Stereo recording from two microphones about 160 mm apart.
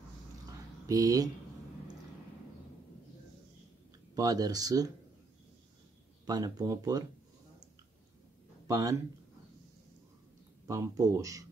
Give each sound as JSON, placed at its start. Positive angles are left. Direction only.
{"t": 0.5, "sound": "a sound", "side_deg": -20}
{"t": 4.1, "sound": "speech", "side_deg": -25}
{"t": 6.2, "sound": "speech", "side_deg": -25}
{"t": 8.6, "sound": "speech", "side_deg": -20}
{"t": 10.7, "sound": "speech", "side_deg": -20}